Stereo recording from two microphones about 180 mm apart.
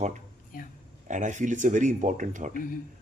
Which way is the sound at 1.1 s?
45° right (ahead or behind).